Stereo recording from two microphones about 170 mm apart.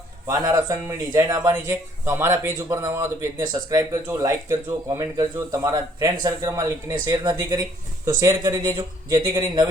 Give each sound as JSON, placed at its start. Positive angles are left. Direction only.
{"t": 0.3, "sound": "speech", "side_deg": -20}